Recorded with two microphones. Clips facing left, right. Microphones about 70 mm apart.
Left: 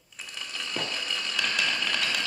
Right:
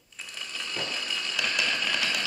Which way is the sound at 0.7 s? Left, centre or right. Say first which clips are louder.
Left 1 dB; centre.